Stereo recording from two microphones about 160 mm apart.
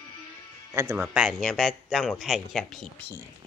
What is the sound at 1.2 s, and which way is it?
Speech, centre (ahead or behind).